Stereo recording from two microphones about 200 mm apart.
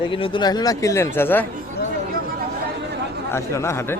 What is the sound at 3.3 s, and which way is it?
Speech, 15° left (ahead or behind).